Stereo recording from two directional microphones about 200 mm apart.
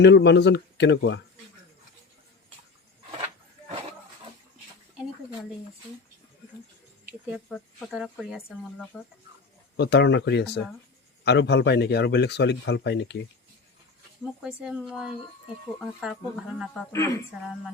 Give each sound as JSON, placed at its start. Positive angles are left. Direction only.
{"t": 0.0, "sound": "speech", "side_deg": 60}
{"t": 7.5, "sound": "speech", "side_deg": 0}
{"t": 9.7, "sound": "speech", "side_deg": 60}
{"t": 14.4, "sound": "speech", "side_deg": -5}